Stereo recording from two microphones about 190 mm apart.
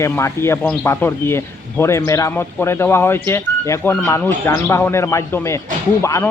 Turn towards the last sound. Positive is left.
turn(degrees=15)  # may be behind; listen again after turning